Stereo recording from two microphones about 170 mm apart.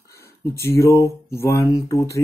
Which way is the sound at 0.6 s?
15° left (ahead or behind).